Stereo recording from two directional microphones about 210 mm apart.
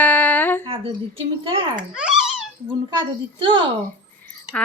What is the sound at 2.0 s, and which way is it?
Speech, 5° right (ahead or behind).